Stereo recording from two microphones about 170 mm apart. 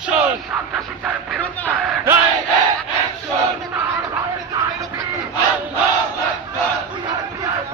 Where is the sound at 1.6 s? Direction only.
15° right (ahead or behind).